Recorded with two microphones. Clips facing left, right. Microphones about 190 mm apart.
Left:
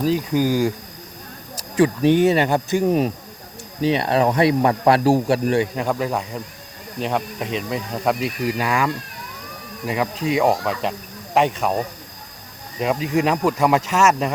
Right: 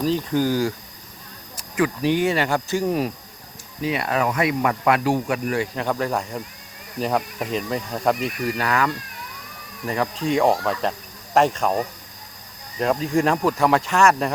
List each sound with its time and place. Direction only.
0.0 s speech: 10° left (ahead or behind)
1.5 s speech: 30° left (ahead or behind)
5.7 s speech: 10° left (ahead or behind)
12.8 s speech: 5° left (ahead or behind)